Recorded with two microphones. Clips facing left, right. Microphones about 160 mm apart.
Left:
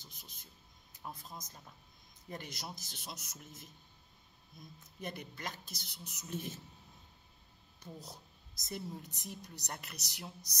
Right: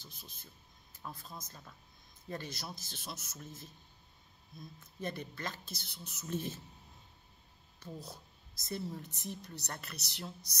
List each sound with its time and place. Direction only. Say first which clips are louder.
0.0 s a sound: right 3 dB; 15° left (ahead or behind)
1.0 s a woman's voice: even; 20° left (ahead or behind)
5.0 s a woman's voice: right 3 dB; 15° left (ahead or behind)
8.5 s a woman's voice: right 3 dB; 15° left (ahead or behind)